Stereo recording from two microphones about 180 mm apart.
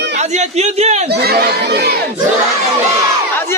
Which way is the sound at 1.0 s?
60° right (ahead or behind).